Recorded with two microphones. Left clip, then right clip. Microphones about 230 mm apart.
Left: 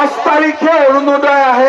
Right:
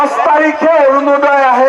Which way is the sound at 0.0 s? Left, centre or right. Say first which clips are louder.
Right 2 dB; right.